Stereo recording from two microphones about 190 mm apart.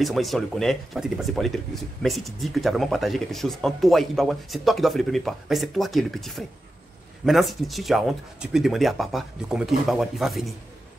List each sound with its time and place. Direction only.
0.0 s speech: centre (ahead or behind)